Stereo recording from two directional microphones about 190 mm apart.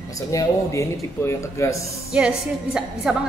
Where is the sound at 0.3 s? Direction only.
15° left (ahead or behind).